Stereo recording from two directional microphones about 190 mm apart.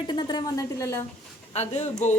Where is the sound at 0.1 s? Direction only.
20° left (ahead or behind).